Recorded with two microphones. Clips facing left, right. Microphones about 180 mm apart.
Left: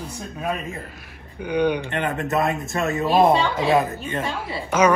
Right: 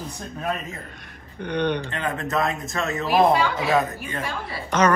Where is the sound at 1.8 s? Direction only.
20° left (ahead or behind).